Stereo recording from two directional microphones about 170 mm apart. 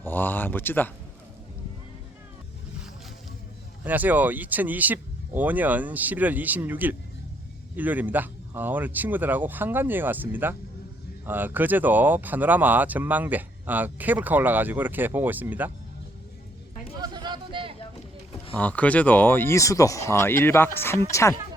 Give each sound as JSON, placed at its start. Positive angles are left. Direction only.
{"t": 0.0, "sound": "speech", "side_deg": 10}
{"t": 3.8, "sound": "speech", "side_deg": -10}
{"t": 17.0, "sound": "a sound", "side_deg": -25}
{"t": 18.5, "sound": "speech", "side_deg": 10}